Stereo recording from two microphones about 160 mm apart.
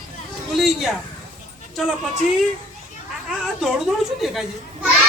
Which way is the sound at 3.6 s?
Centre (ahead or behind).